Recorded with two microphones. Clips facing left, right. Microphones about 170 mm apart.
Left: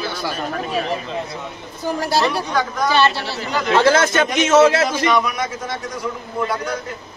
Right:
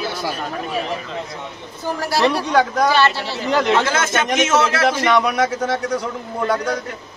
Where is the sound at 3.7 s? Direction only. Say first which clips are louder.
Left 4 dB; 35° left (ahead or behind).